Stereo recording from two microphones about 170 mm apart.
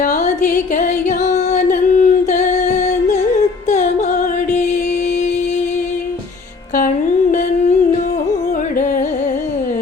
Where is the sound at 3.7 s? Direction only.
45° left (ahead or behind).